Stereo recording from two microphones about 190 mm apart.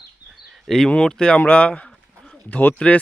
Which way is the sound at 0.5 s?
Centre (ahead or behind).